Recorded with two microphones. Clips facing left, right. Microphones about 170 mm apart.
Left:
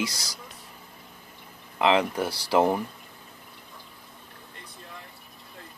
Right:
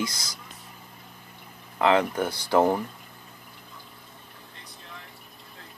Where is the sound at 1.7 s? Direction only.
20° left (ahead or behind).